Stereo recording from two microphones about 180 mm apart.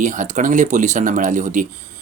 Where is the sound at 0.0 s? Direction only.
45° right (ahead or behind).